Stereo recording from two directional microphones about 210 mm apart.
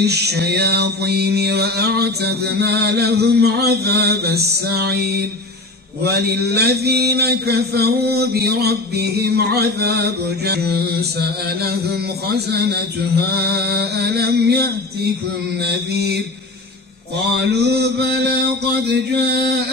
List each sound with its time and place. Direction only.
0.0 s mantra: 50° right (ahead or behind)
13.3 s mantra: 50° right (ahead or behind)
17.4 s mantra: 50° right (ahead or behind)